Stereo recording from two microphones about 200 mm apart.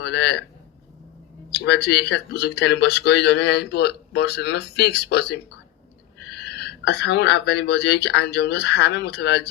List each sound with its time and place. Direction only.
0.0 s speech: 60° left (ahead or behind)
1.5 s speech: 55° left (ahead or behind)